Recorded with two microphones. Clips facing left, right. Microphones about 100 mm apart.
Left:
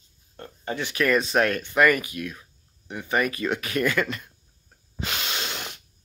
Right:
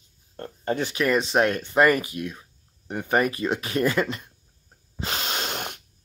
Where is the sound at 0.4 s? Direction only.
40° right (ahead or behind).